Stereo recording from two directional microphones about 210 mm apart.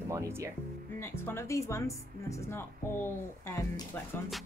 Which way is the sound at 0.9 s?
10° left (ahead or behind).